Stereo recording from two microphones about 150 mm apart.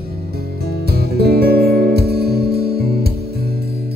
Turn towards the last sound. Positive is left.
turn(degrees=-90)